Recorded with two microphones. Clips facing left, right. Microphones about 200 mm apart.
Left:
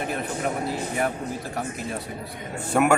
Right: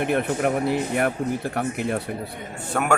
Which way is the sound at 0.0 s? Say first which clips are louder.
Right 6 dB; 60° right (ahead or behind).